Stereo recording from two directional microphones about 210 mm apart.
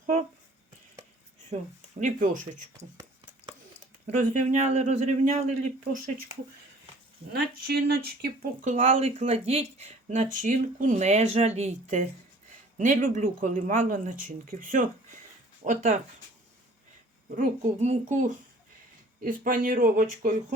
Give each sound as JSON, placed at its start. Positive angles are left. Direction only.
{"t": 0.0, "sound": "a sound", "side_deg": -40}
{"t": 2.0, "sound": "speech", "side_deg": -35}
{"t": 4.0, "sound": "speech", "side_deg": -35}
{"t": 7.3, "sound": "speech", "side_deg": -50}
{"t": 17.3, "sound": "speech", "side_deg": -35}